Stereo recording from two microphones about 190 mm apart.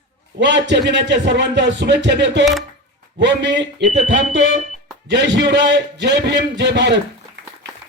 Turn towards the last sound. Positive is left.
turn(degrees=-65)  # may be behind; listen again after turning